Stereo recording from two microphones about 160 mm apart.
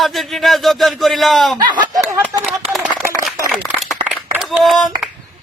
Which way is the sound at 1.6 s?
25° right (ahead or behind).